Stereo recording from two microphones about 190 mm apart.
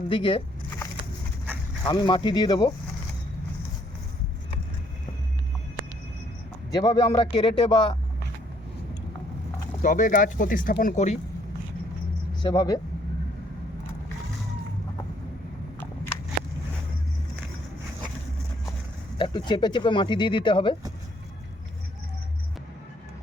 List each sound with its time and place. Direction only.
0.1 s speech: 30° left (ahead or behind)
1.9 s speech: 25° left (ahead or behind)
6.7 s speech: 20° left (ahead or behind)
9.8 s speech: 45° left (ahead or behind)
12.4 s speech: 20° left (ahead or behind)
19.1 s speech: 25° left (ahead or behind)